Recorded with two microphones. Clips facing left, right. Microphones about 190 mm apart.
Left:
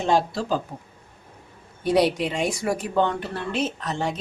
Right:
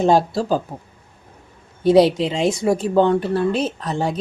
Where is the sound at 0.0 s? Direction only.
40° right (ahead or behind).